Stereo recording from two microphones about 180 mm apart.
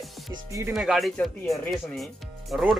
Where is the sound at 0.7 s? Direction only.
Centre (ahead or behind).